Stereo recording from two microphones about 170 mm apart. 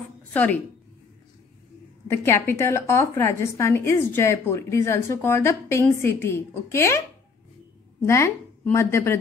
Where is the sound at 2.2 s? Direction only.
15° left (ahead or behind).